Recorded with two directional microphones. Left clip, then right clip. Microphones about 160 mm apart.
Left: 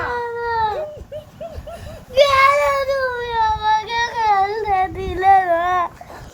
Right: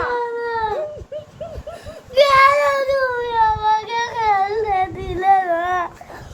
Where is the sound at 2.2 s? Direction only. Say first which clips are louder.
Right 1 dB; 70° right (ahead or behind).